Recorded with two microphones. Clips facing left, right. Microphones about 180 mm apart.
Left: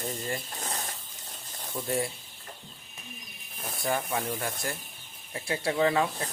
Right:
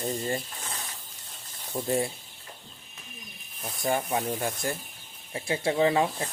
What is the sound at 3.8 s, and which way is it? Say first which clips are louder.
Speech: right 3 dB; 25° right (ahead or behind).